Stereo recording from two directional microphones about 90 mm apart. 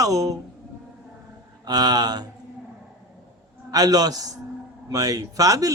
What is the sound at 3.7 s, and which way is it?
A man's voice, 45° right (ahead or behind).